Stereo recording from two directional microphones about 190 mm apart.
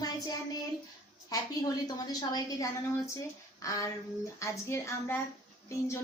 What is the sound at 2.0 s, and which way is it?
A woman's voice, 20° left (ahead or behind).